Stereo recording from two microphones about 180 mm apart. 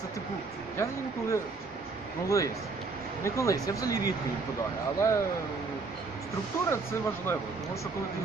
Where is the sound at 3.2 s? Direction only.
15° left (ahead or behind).